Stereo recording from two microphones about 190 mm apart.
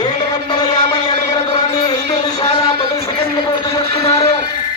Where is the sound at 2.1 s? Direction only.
20° left (ahead or behind).